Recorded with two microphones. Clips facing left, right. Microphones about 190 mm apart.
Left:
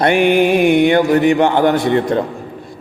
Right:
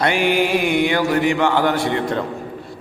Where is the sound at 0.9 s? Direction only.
20° left (ahead or behind).